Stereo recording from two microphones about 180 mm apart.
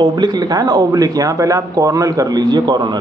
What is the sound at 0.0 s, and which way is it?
Speech, 25° right (ahead or behind).